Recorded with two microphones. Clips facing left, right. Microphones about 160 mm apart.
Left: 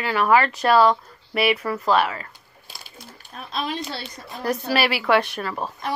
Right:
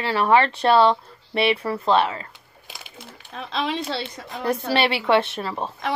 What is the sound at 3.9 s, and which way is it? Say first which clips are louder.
Speech: right 4 dB; 25° right (ahead or behind).